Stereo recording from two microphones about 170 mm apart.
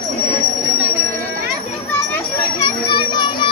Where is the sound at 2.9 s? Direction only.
25° left (ahead or behind).